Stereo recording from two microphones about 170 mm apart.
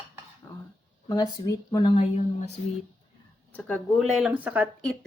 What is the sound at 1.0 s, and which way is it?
Speech, 20° left (ahead or behind).